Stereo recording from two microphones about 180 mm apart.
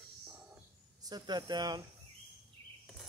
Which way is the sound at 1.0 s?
20° right (ahead or behind).